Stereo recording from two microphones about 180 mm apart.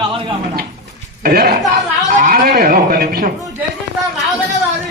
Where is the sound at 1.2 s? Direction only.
50° right (ahead or behind).